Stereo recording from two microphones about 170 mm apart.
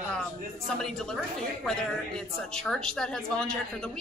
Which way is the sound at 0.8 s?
5° left (ahead or behind).